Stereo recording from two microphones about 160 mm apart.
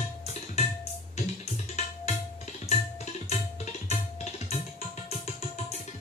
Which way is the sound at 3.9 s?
40° left (ahead or behind).